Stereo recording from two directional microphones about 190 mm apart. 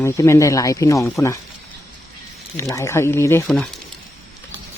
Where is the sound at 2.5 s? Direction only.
15° left (ahead or behind).